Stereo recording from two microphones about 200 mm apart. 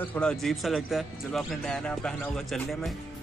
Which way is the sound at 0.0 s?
5° left (ahead or behind).